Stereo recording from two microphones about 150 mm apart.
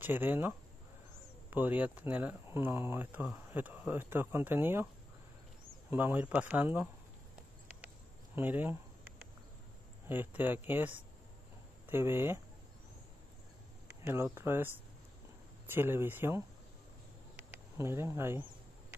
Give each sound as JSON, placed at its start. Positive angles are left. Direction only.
{"t": 0.0, "sound": "speech", "side_deg": -15}
{"t": 5.9, "sound": "speech", "side_deg": -15}
{"t": 8.4, "sound": "speech", "side_deg": -15}
{"t": 10.0, "sound": "speech", "side_deg": -15}
{"t": 14.0, "sound": "speech", "side_deg": -15}
{"t": 15.7, "sound": "speech", "side_deg": -15}
{"t": 17.7, "sound": "speech", "side_deg": -15}